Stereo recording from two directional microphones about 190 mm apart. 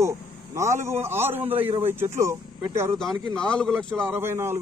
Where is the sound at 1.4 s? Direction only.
30° right (ahead or behind).